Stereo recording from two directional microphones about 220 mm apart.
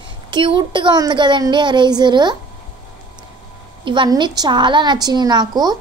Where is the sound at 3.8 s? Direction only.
20° right (ahead or behind).